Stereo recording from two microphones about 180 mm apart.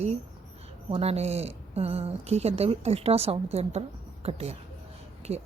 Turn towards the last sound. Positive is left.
turn(degrees=-35)  # may be behind; listen again after turning